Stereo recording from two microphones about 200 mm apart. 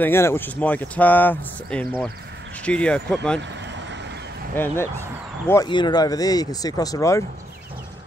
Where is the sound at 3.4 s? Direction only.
60° right (ahead or behind).